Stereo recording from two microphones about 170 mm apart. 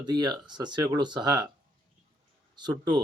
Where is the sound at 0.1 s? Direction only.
25° right (ahead or behind).